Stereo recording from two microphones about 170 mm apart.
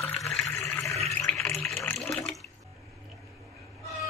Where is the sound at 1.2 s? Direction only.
5° left (ahead or behind).